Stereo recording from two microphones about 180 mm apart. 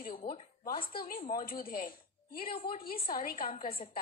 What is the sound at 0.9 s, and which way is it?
A woman's voice, 55° left (ahead or behind).